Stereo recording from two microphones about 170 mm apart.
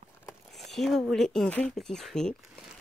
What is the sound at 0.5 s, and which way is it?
Speech, centre (ahead or behind).